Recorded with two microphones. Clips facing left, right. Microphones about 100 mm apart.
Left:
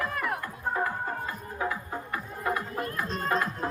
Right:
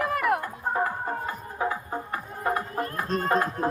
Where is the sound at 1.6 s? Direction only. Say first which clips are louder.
Right 3 dB; 30° right (ahead or behind).